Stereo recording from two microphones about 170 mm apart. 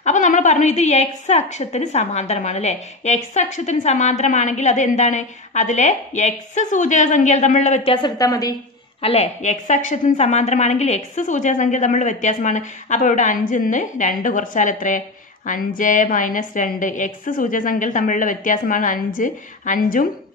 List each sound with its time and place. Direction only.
0.0 s a woman's voice: 45° left (ahead or behind); by 8.5 s 20° left (ahead or behind)
9.0 s a woman's voice: 40° left (ahead or behind)